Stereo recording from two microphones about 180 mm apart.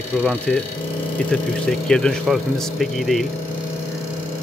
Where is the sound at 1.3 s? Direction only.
5° left (ahead or behind).